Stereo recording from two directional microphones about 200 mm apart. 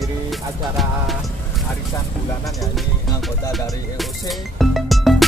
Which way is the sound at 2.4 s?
Centre (ahead or behind).